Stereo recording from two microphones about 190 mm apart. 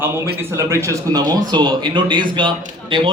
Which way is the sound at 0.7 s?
15° right (ahead or behind).